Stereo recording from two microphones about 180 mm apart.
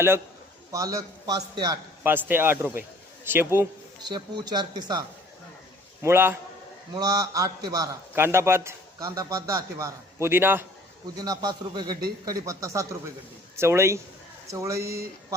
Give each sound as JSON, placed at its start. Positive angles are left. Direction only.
{"t": 0.7, "sound": "a man's voice", "side_deg": -20}
{"t": 2.0, "sound": "a man's voice", "side_deg": -10}
{"t": 4.0, "sound": "a man's voice", "side_deg": -25}